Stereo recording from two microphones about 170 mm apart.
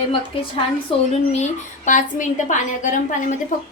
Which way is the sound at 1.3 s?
45° left (ahead or behind).